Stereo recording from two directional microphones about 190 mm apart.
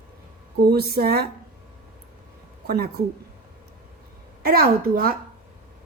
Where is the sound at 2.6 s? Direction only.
55° right (ahead or behind).